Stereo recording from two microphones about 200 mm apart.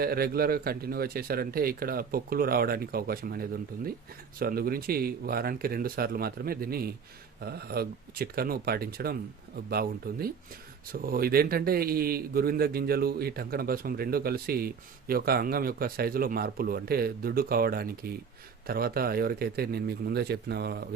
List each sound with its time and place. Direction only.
0.0 s a man's voice: 50° right (ahead or behind)